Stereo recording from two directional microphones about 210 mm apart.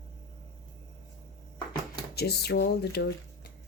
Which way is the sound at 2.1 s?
50° left (ahead or behind).